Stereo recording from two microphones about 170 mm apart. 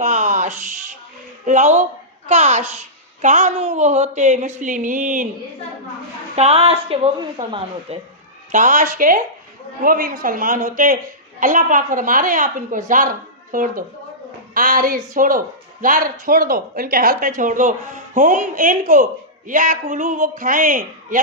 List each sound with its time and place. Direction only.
0.0 s a sound: 45° right (ahead or behind)
1.5 s a woman's voice: 45° right (ahead or behind)
6.3 s a woman's voice: 40° right (ahead or behind)